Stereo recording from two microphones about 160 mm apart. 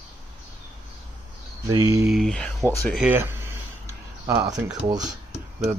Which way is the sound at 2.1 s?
Centre (ahead or behind).